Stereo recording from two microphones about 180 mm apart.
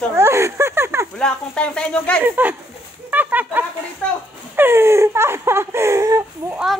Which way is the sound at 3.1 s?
10° right (ahead or behind).